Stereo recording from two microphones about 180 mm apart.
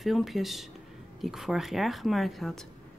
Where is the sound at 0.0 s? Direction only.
Centre (ahead or behind).